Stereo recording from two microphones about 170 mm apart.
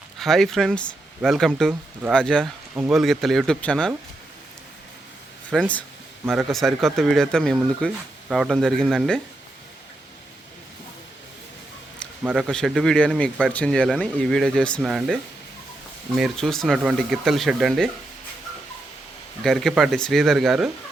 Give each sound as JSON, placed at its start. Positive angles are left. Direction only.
{"t": 0.2, "sound": "speech", "side_deg": 0}
{"t": 5.5, "sound": "speech", "side_deg": 5}
{"t": 12.2, "sound": "speech", "side_deg": -5}
{"t": 19.4, "sound": "speech", "side_deg": 0}